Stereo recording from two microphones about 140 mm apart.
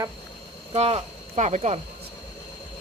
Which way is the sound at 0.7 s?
45° right (ahead or behind).